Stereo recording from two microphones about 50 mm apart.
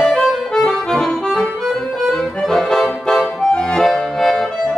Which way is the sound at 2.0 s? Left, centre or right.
Centre.